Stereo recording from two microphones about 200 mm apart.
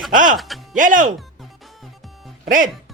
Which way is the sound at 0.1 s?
40° right (ahead or behind).